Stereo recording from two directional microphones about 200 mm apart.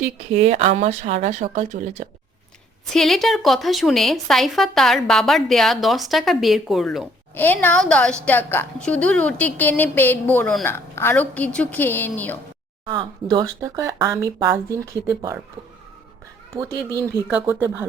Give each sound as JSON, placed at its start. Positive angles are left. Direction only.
{"t": 0.0, "sound": "speech", "side_deg": -35}
{"t": 2.9, "sound": "a woman's voice", "side_deg": 0}
{"t": 12.9, "sound": "speech", "side_deg": -20}
{"t": 17.2, "sound": "speech", "side_deg": -10}